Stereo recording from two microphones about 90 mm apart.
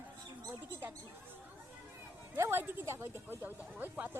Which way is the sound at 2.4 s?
25° right (ahead or behind).